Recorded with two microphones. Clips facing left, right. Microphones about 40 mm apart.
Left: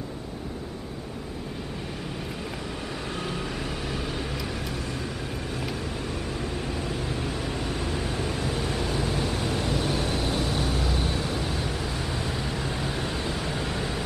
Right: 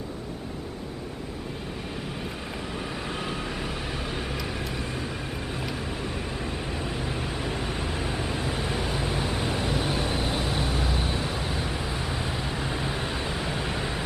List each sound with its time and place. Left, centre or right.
3.1 s vehicle: centre
7.1 s vehicle: centre